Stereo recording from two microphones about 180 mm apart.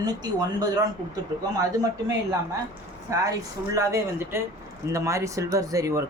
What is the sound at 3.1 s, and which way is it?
Speech, 15° right (ahead or behind).